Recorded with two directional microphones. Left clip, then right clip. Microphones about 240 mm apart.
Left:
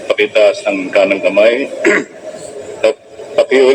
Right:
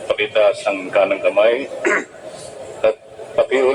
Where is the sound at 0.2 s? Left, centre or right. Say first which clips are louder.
Left 6 dB; left.